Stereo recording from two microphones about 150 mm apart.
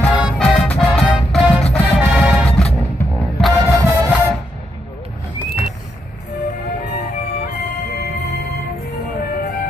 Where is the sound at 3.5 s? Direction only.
20° right (ahead or behind).